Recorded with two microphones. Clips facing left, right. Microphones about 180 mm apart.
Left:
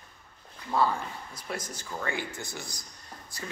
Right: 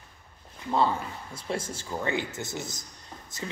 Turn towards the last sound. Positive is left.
turn(degrees=-20)  # may be behind; listen again after turning